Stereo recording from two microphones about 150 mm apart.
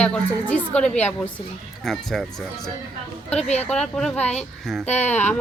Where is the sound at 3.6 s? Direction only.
5° left (ahead or behind).